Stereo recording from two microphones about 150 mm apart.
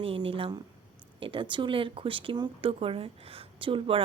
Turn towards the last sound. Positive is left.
turn(degrees=-35)  # may be behind; listen again after turning